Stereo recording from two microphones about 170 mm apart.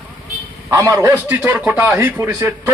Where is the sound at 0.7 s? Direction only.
20° right (ahead or behind).